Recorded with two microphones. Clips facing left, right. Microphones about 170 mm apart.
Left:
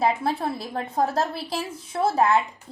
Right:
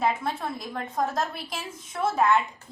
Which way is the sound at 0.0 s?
35° left (ahead or behind).